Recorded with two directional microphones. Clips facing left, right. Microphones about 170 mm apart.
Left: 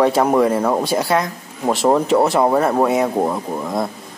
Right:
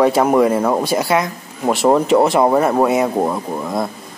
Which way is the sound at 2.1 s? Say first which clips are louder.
Right 2 dB; 15° right (ahead or behind).